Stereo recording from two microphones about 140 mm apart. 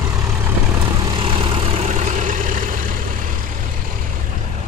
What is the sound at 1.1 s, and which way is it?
Vehicle, 40° right (ahead or behind).